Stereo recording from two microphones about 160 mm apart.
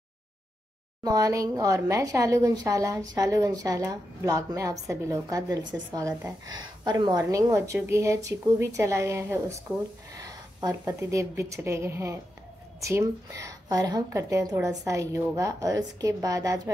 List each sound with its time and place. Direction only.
1.0 s a woman's voice: 20° right (ahead or behind)